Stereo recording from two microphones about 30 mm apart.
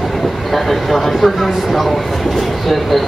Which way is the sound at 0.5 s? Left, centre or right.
Centre.